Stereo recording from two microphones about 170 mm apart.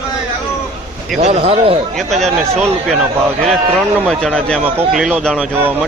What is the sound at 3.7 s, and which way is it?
Speech, centre (ahead or behind).